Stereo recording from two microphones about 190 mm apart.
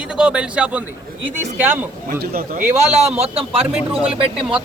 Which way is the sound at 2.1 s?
50° right (ahead or behind).